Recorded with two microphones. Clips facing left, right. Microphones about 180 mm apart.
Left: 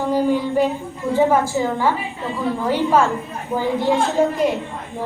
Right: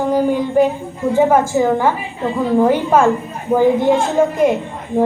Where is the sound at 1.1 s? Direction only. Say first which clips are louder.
Right 3 dB; 50° right (ahead or behind).